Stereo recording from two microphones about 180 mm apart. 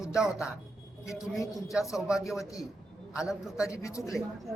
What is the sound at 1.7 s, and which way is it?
Speech, centre (ahead or behind).